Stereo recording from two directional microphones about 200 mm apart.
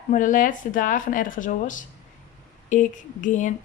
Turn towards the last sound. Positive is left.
turn(degrees=40)  # may be behind; listen again after turning